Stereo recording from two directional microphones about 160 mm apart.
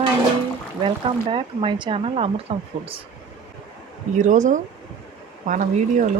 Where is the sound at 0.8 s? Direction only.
35° right (ahead or behind).